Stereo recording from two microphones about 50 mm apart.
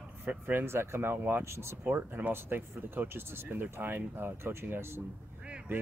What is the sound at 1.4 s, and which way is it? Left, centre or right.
Speech, right.